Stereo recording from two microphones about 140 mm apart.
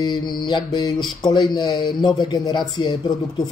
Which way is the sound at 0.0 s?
30° left (ahead or behind).